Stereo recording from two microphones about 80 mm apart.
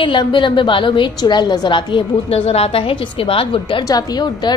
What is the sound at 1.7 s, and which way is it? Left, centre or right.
Speech, left.